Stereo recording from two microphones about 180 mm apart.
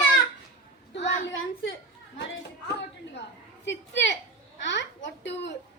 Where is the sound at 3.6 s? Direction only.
85° left.